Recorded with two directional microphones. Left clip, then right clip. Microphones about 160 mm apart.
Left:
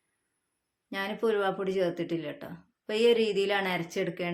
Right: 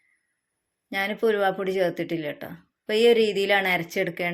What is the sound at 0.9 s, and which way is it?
Speech, 25° right (ahead or behind).